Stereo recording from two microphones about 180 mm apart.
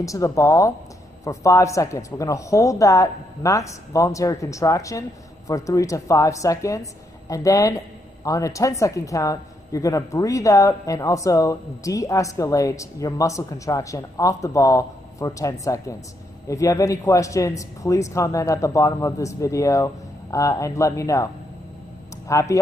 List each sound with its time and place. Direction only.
0.0 s a woman's voice: 20° left (ahead or behind)
22.3 s a woman's voice: 15° left (ahead or behind)